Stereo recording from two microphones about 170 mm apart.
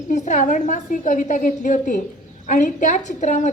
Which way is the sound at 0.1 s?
50° left (ahead or behind).